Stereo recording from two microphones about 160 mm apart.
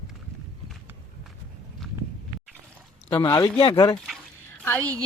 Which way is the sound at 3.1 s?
25° left (ahead or behind).